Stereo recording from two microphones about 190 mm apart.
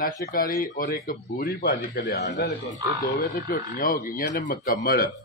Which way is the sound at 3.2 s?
50° left (ahead or behind).